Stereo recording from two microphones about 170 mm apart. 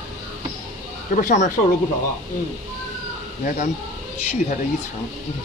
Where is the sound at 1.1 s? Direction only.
45° left (ahead or behind).